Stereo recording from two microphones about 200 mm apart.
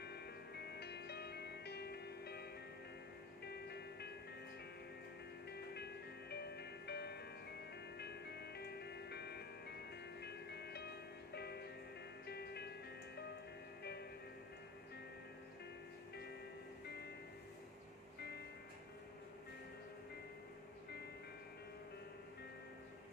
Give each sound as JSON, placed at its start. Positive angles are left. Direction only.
{"t": 0.0, "sound": "music", "side_deg": 55}
{"t": 3.4, "sound": "music", "side_deg": 55}
{"t": 6.3, "sound": "music", "side_deg": 55}
{"t": 16.8, "sound": "music", "side_deg": 55}